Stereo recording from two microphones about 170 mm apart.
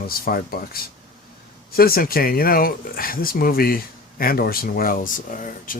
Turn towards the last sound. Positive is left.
turn(degrees=50)  # may be behind; listen again after turning